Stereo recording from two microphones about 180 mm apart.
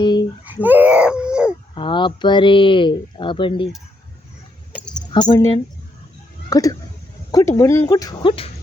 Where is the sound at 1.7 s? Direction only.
30° left (ahead or behind).